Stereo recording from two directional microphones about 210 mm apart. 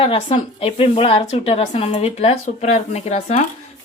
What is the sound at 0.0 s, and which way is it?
A woman's voice, 25° left (ahead or behind).